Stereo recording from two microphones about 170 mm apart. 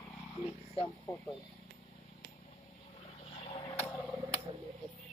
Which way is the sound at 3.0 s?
35° left (ahead or behind).